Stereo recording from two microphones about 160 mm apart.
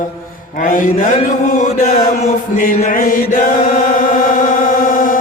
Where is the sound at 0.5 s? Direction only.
60° left (ahead or behind).